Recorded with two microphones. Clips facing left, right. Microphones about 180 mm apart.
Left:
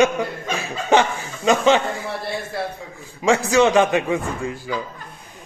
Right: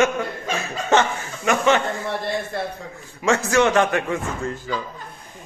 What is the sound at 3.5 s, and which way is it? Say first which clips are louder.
A man's voice: left 2 dB; 15° left (ahead or behind).